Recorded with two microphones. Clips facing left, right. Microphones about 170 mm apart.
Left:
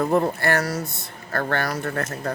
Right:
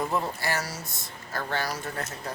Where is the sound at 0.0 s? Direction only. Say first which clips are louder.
Left 8 dB; 60° left (ahead or behind).